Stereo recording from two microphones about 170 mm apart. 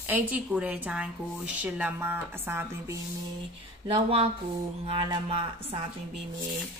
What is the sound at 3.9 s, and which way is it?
Speech, 35° right (ahead or behind).